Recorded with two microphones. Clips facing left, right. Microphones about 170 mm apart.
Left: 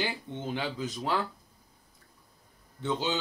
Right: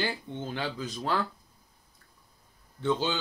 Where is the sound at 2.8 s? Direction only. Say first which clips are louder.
Right 2 dB; 20° left (ahead or behind).